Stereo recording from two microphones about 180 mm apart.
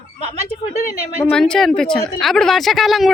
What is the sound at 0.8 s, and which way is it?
Speech, 55° left (ahead or behind).